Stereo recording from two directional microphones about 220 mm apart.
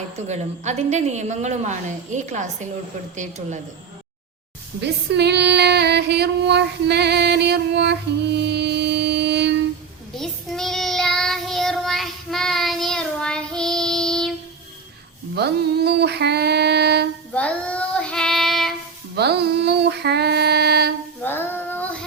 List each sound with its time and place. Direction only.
0.3 s a woman's voice: 30° right (ahead or behind)
4.8 s female singing: 50° right (ahead or behind)
10.2 s child singing: centre (ahead or behind)
15.4 s a sound: 50° right (ahead or behind)
17.3 s child singing: 5° left (ahead or behind)
19.1 s female singing: 50° right (ahead or behind)
21.2 s child singing: 10° left (ahead or behind)